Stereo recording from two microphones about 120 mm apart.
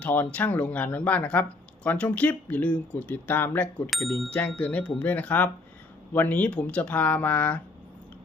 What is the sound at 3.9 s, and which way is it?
Speech, centre (ahead or behind).